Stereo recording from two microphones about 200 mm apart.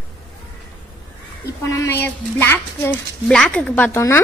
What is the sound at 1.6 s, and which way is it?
A woman's voice, 15° left (ahead or behind).